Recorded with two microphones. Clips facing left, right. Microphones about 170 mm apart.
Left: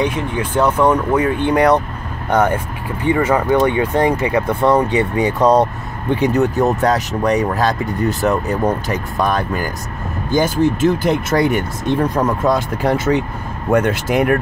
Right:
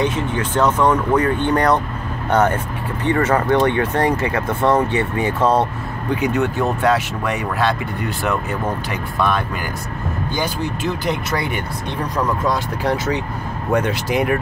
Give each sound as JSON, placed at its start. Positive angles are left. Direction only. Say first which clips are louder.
{"t": 0.0, "sound": "speech", "louder": "left 1 dB", "side_deg": 10}
{"t": 6.1, "sound": "speech", "louder": "left 4 dB", "side_deg": 35}
{"t": 10.3, "sound": "speech", "louder": "left 10 dB", "side_deg": 45}